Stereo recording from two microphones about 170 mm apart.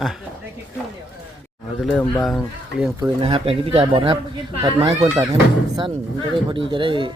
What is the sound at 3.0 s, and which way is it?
Speech, 25° right (ahead or behind).